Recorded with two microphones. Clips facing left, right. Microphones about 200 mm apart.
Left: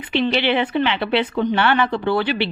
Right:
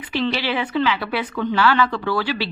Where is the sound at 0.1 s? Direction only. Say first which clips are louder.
Left 4 dB; 25° left (ahead or behind).